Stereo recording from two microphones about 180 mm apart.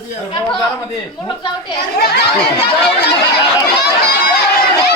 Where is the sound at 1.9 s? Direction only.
60° left (ahead or behind).